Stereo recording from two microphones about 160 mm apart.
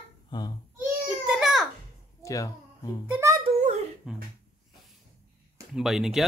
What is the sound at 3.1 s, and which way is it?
Speech, 15° right (ahead or behind).